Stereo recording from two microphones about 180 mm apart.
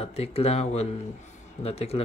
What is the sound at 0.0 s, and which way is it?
Speech, 35° left (ahead or behind).